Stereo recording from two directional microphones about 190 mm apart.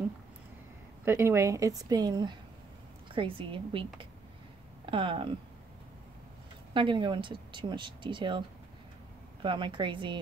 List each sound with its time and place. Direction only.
1.0 s a woman's voice: 15° right (ahead or behind)
4.8 s speech: 25° right (ahead or behind)
6.7 s speech: 25° right (ahead or behind)